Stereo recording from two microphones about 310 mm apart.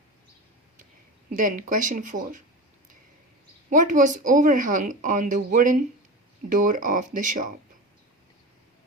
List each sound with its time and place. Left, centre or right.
1.3 s speech: right
3.7 s speech: right